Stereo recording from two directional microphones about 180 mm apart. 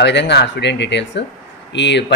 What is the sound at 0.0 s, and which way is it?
Speech, 75° left (ahead or behind).